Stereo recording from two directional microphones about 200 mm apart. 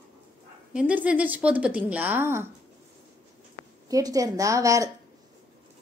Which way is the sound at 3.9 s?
15° right (ahead or behind).